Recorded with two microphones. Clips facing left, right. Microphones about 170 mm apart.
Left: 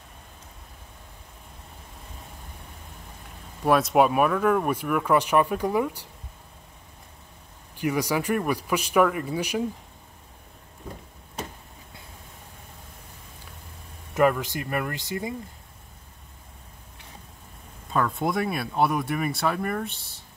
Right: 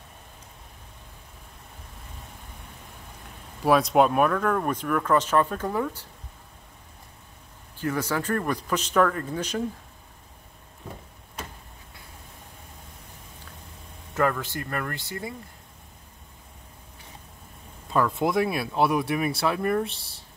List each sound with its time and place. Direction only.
3.6 s speech: centre (ahead or behind)
7.7 s speech: 15° left (ahead or behind)
14.1 s speech: 15° left (ahead or behind)
17.9 s speech: centre (ahead or behind)